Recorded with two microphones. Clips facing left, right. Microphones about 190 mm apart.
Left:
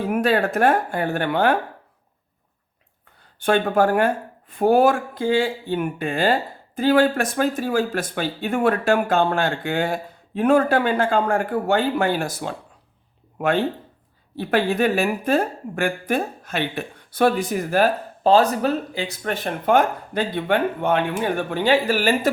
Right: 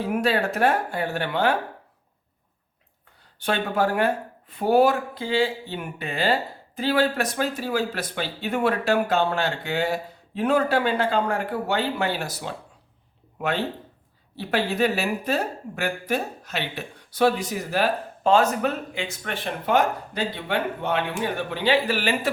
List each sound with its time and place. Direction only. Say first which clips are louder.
0.0 s speech: left 3 dB; 50° left (ahead or behind)
3.4 s speech: left 5 dB; 50° left (ahead or behind)
18.2 s speech: left 3 dB; 35° left (ahead or behind)